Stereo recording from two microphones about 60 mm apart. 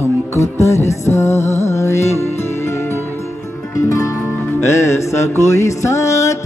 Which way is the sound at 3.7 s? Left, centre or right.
Left.